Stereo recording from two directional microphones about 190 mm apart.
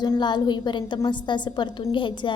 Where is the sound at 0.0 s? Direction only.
20° left (ahead or behind).